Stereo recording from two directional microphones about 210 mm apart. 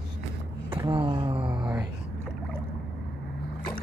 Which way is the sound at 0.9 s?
20° right (ahead or behind).